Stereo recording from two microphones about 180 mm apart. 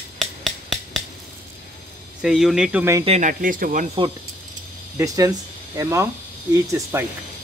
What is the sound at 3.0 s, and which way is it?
Speech, 40° right (ahead or behind).